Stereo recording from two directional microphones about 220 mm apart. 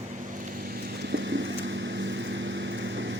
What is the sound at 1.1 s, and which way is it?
Vehicle, 55° right (ahead or behind).